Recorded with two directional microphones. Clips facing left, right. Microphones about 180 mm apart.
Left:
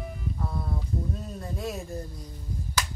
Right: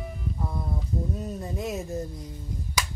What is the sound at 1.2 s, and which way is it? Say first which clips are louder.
Speech: right 3 dB; 20° right (ahead or behind).